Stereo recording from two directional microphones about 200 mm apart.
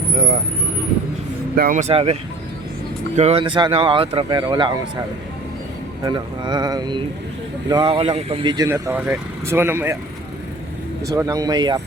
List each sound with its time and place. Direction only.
1.5 s speech: 45° right (ahead or behind)
3.2 s speech: 30° right (ahead or behind)
6.1 s speech: 20° right (ahead or behind)
11.0 s speech: 15° right (ahead or behind)